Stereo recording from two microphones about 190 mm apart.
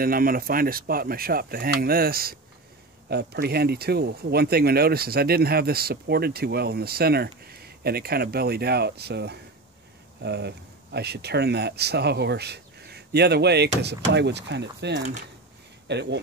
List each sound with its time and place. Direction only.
0.0 s speech: 50° right (ahead or behind)